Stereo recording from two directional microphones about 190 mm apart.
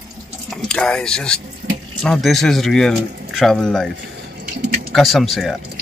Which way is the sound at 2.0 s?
Centre (ahead or behind).